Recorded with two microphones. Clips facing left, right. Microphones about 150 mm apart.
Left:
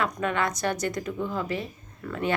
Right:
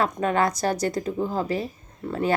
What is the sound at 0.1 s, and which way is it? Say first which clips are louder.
Speech: right 5 dB; 35° right (ahead or behind).